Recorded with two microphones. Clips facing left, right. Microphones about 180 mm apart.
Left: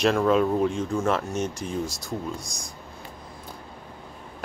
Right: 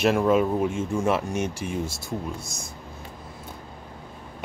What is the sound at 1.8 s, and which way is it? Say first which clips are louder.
Speech: even; 25° right (ahead or behind).